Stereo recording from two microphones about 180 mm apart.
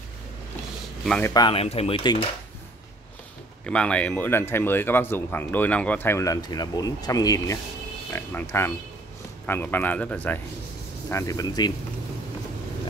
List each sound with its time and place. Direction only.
1.0 s speech: 5° left (ahead or behind)
1.3 s speech: 25° left (ahead or behind)
3.6 s speech: 5° left (ahead or behind)